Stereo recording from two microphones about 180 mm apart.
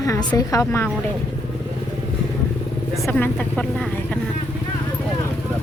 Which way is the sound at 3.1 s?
10° left (ahead or behind).